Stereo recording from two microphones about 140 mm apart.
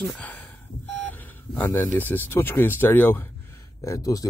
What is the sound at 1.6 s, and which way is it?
Speech, 15° left (ahead or behind).